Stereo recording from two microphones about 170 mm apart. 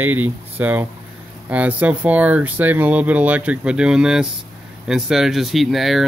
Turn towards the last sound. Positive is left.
turn(degrees=0)  # may be behind; listen again after turning